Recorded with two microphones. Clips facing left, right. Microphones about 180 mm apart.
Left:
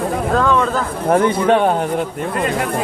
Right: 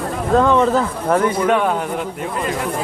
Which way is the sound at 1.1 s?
30° left (ahead or behind).